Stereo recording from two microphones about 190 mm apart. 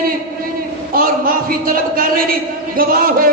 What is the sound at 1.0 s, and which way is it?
A man's voice, 50° right (ahead or behind).